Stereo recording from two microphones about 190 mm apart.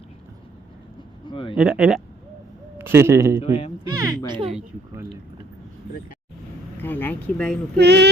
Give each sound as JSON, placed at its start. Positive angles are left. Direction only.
{"t": 1.2, "sound": "speech", "side_deg": 25}
{"t": 1.5, "sound": "a man's voice", "side_deg": -5}
{"t": 3.4, "sound": "speech", "side_deg": 30}
{"t": 3.8, "sound": "speech", "side_deg": -20}
{"t": 6.8, "sound": "speech", "side_deg": 10}
{"t": 7.8, "sound": "a sound", "side_deg": -60}